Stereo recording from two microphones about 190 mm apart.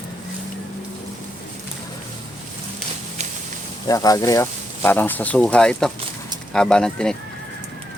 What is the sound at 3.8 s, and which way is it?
A man's voice, 20° left (ahead or behind).